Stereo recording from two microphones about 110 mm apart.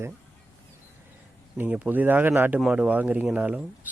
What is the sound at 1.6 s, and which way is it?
Speech, 15° right (ahead or behind).